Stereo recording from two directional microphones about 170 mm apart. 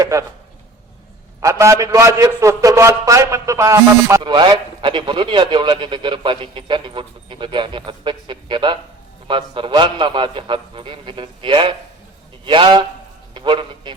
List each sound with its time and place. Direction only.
0.0 s a man's voice: 20° right (ahead or behind)
1.4 s a man's voice: 15° right (ahead or behind)